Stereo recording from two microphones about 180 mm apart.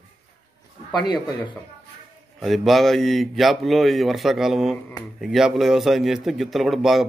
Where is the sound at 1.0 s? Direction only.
25° left (ahead or behind).